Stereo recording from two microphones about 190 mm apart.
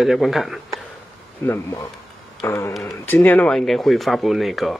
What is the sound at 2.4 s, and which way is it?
Speech, 15° left (ahead or behind).